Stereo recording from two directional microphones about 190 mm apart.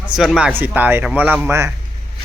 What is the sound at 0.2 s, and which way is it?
Speech, 5° right (ahead or behind).